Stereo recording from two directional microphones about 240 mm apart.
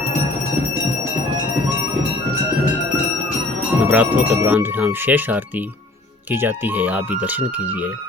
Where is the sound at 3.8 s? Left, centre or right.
Centre.